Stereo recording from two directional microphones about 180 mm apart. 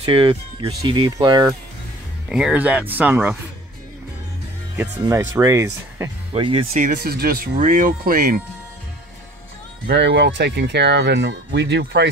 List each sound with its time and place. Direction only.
0.0 s speech: 30° right (ahead or behind)
2.2 s speech: 5° right (ahead or behind)
4.7 s speech: 20° right (ahead or behind)
6.3 s speech: 30° right (ahead or behind)
7.0 s speech: 60° right (ahead or behind)
9.8 s speech: 70° right (ahead or behind)